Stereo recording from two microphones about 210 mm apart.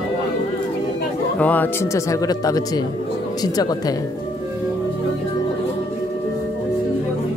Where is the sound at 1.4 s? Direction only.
10° left (ahead or behind).